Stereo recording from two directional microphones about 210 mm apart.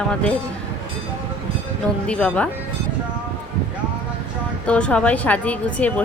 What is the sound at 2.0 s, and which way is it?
Speech, 5° left (ahead or behind).